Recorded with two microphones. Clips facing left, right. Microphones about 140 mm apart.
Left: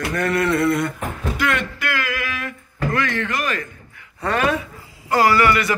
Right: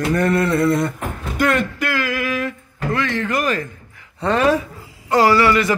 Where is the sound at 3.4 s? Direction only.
35° right (ahead or behind).